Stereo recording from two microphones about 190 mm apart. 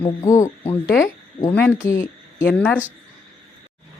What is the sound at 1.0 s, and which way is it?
Speech, 10° left (ahead or behind).